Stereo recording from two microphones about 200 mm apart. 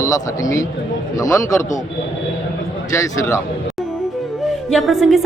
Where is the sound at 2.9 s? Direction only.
15° left (ahead or behind).